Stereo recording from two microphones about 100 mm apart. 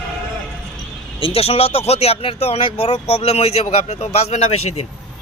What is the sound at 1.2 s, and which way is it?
Speech, 80° left.